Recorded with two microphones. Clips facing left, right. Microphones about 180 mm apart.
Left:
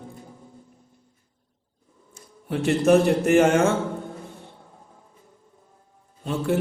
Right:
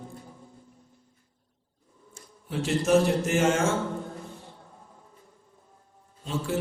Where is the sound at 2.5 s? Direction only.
60° left (ahead or behind).